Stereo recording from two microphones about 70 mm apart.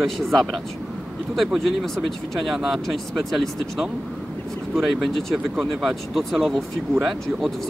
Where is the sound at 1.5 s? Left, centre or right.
Centre.